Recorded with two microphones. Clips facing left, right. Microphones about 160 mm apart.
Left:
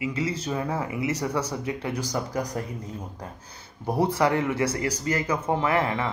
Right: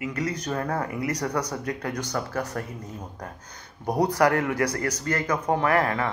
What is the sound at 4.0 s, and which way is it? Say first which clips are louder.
Speech: right 1 dB; 20° left (ahead or behind).